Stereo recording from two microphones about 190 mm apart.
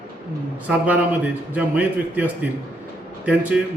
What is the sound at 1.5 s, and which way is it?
Speech, 10° right (ahead or behind).